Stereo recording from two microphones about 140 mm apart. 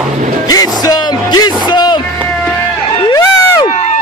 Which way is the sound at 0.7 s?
30° left (ahead or behind).